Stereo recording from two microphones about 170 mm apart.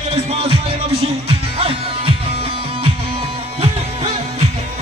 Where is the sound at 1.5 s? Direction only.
35° right (ahead or behind).